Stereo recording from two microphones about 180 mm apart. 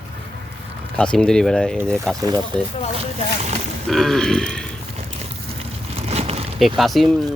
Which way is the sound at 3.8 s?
Centre (ahead or behind).